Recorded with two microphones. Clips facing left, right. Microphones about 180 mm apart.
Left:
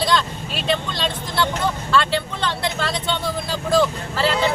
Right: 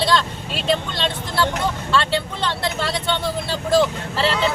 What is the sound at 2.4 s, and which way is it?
Speech, centre (ahead or behind).